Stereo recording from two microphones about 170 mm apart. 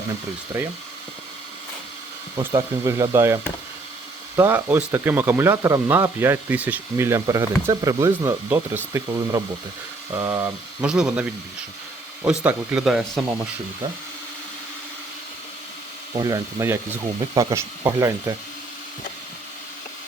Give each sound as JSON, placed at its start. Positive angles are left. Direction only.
{"t": 2.5, "sound": "speech", "side_deg": -20}
{"t": 16.1, "sound": "speech", "side_deg": -20}